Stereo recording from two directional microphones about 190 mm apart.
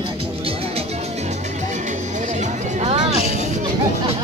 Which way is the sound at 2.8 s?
35° right (ahead or behind).